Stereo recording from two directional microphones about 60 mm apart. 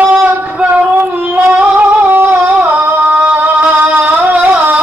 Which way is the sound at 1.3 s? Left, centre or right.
Right.